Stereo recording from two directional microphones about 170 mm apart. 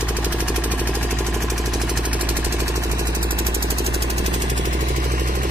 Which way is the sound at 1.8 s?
5° right (ahead or behind).